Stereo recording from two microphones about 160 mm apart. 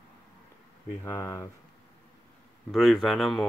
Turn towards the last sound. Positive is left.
turn(degrees=0)  # may be behind; listen again after turning